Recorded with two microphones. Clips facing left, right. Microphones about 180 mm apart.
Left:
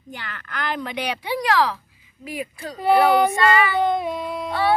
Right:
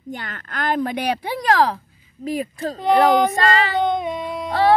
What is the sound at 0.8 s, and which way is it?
Speech, 45° right (ahead or behind).